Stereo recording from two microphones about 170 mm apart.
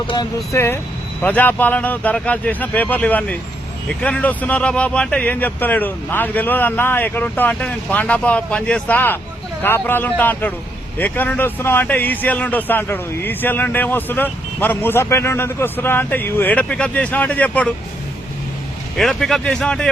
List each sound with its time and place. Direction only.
0.1 s speech: 20° left (ahead or behind)
18.9 s speech: centre (ahead or behind)